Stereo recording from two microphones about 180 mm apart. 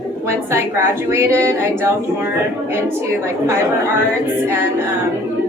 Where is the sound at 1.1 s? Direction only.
15° right (ahead or behind).